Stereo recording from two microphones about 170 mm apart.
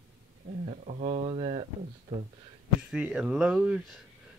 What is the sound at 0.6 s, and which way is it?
Speech, 40° right (ahead or behind).